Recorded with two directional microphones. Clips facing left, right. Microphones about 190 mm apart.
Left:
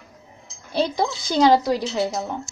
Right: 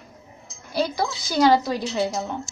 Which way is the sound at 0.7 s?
25° left (ahead or behind).